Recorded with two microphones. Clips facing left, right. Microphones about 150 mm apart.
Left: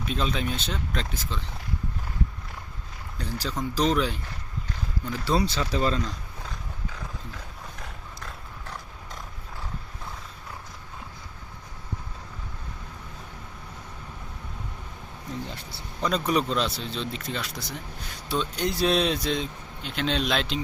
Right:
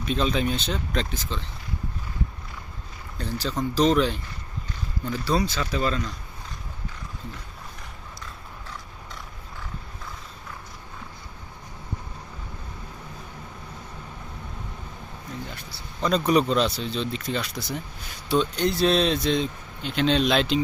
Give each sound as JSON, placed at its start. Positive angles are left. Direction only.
{"t": 0.1, "sound": "speech", "side_deg": 0}
{"t": 3.2, "sound": "speech", "side_deg": 10}
{"t": 5.2, "sound": "speech", "side_deg": 25}
{"t": 16.0, "sound": "speech", "side_deg": 5}